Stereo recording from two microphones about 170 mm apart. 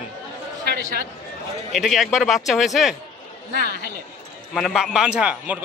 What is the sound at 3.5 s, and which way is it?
Speech, 70° right (ahead or behind).